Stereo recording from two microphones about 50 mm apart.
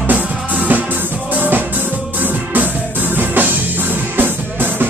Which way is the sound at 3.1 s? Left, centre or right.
Right.